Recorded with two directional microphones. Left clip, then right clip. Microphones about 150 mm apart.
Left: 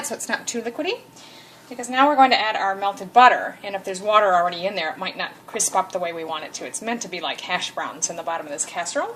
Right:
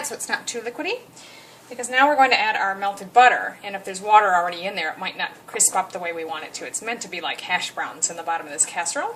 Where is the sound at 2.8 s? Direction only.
35° left (ahead or behind).